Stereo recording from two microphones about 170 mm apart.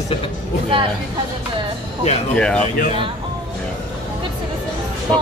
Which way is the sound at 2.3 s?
5° left (ahead or behind).